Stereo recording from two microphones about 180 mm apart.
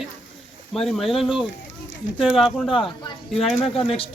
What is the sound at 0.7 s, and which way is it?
Speech, centre (ahead or behind).